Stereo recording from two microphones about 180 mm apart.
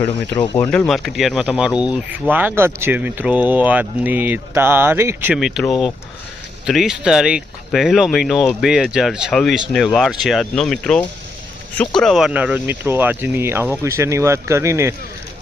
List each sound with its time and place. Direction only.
0.3 s speech: 25° left (ahead or behind)
0.6 s speech: 5° left (ahead or behind); by 14.9 s 15° right (ahead or behind)